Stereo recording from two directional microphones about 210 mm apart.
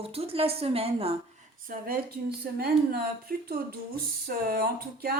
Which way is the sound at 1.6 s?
45° right (ahead or behind).